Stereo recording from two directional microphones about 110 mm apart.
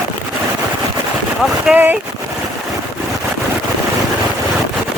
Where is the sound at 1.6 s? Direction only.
15° right (ahead or behind).